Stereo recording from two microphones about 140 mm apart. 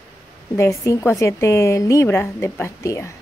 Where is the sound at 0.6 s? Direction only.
20° left (ahead or behind).